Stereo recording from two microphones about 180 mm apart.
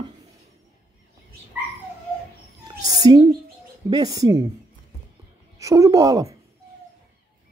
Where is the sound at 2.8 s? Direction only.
20° right (ahead or behind).